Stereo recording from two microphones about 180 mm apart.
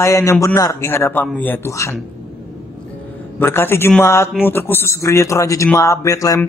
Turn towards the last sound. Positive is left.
turn(degrees=20)  # may be behind; listen again after turning